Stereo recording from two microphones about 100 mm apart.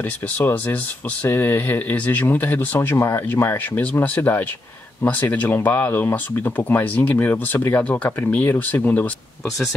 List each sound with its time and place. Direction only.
1.2 s speech: 20° left (ahead or behind)